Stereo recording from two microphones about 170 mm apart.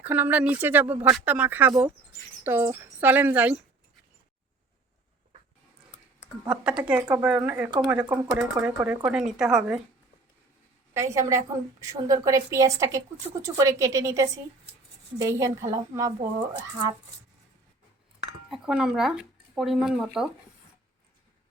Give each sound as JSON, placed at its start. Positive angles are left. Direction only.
{"t": 0.0, "sound": "speech", "side_deg": -10}
{"t": 6.4, "sound": "speech", "side_deg": -5}
{"t": 10.9, "sound": "a woman's voice", "side_deg": -20}
{"t": 18.5, "sound": "speech", "side_deg": -5}